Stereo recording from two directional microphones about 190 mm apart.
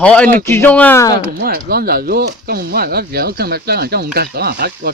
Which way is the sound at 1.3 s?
55° right (ahead or behind).